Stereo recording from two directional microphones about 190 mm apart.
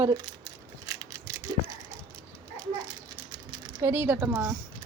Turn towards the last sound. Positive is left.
turn(degrees=-15)  # may be behind; listen again after turning